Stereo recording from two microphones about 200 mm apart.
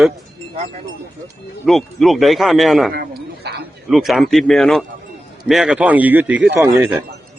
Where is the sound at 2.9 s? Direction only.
50° right (ahead or behind).